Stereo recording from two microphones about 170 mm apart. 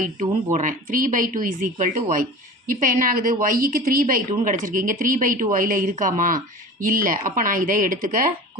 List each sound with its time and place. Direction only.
0.5 s speech: 50° right (ahead or behind)